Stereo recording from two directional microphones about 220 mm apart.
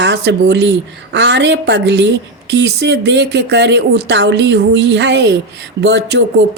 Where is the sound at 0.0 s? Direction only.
50° right (ahead or behind).